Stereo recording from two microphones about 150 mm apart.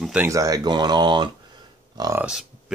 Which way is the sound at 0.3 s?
25° right (ahead or behind).